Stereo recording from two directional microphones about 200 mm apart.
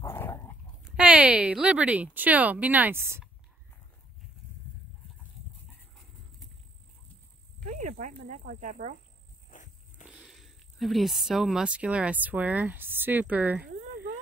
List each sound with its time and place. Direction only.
0.0 s dog: 10° left (ahead or behind)
0.8 s speech: 5° right (ahead or behind)
7.7 s speech: 40° right (ahead or behind)
9.5 s walk: 40° left (ahead or behind)
10.0 s speech: centre (ahead or behind)